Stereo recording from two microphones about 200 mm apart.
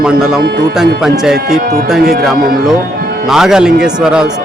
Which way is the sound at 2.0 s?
50° right (ahead or behind).